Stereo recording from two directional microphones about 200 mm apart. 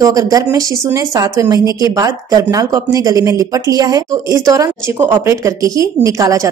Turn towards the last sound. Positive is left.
turn(degrees=-15)  # may be behind; listen again after turning